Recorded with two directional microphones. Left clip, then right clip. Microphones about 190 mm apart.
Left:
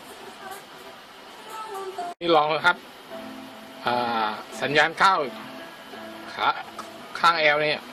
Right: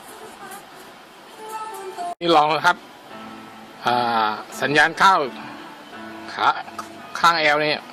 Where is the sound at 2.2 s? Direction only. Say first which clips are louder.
Right 4 dB; 20° right (ahead or behind).